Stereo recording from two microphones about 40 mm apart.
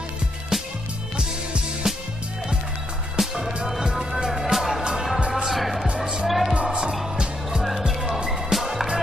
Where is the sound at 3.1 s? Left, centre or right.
Centre.